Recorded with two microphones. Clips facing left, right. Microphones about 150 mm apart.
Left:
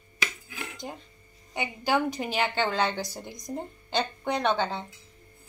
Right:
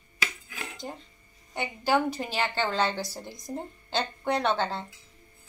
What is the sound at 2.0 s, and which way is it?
Speech, 15° left (ahead or behind).